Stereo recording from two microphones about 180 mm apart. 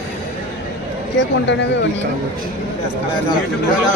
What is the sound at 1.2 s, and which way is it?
Speech, 80° left.